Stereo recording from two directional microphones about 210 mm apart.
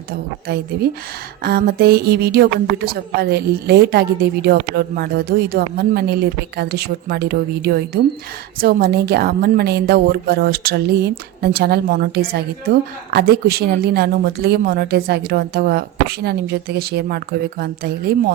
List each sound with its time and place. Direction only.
0.1 s a woman's voice: 50° right (ahead or behind)